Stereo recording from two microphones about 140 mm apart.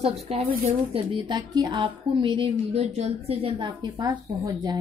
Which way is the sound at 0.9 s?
30° right (ahead or behind).